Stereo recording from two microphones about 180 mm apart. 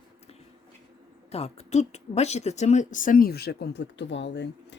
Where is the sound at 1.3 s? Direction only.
35° left (ahead or behind).